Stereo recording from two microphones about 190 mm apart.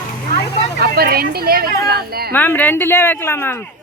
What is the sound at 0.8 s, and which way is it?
Speech, 55° right (ahead or behind).